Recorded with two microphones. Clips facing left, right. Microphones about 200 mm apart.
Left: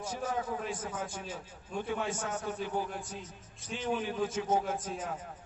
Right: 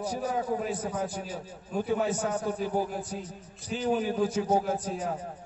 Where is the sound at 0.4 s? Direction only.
35° right (ahead or behind).